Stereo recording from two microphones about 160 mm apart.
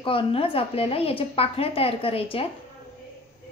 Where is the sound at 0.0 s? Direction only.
35° left (ahead or behind).